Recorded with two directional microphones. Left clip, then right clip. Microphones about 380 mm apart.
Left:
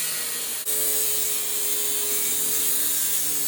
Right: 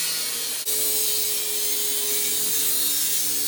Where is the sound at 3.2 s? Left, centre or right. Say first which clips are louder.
Right 2 dB; centre.